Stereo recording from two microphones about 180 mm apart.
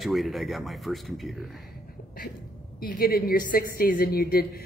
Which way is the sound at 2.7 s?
55° left (ahead or behind).